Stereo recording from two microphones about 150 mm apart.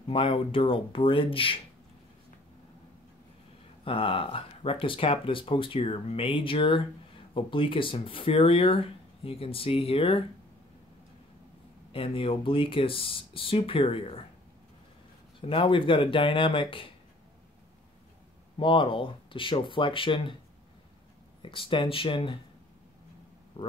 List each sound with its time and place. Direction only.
0.1 s speech: 35° left (ahead or behind)
3.8 s speech: 35° left (ahead or behind)
11.9 s speech: 40° left (ahead or behind)
15.4 s speech: 35° left (ahead or behind)
18.6 s speech: 35° left (ahead or behind)
21.4 s speech: 35° left (ahead or behind)